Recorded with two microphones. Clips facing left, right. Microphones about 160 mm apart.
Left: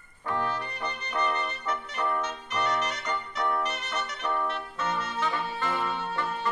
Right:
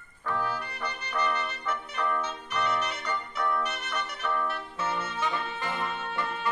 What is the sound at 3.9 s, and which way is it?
Brass instrument, 25° left (ahead or behind).